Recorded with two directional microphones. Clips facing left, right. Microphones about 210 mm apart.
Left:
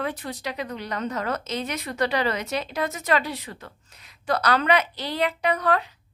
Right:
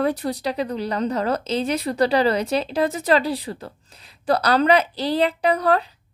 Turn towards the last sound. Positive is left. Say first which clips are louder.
# right 4 dB
turn(degrees=-35)  # may be behind; listen again after turning